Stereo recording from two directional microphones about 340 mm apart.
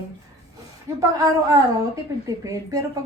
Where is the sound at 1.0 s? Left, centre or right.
Centre.